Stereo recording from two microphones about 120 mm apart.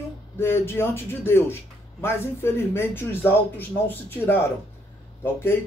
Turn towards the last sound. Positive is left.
turn(degrees=20)  # may be behind; listen again after turning